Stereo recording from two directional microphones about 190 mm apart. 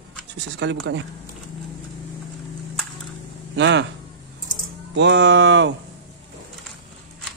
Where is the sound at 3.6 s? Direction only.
70° right (ahead or behind).